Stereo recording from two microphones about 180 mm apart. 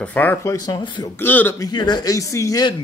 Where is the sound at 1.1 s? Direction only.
10° left (ahead or behind).